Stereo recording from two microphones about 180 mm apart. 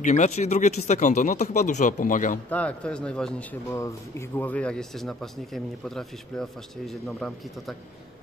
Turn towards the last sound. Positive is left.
turn(degrees=0)  # may be behind; listen again after turning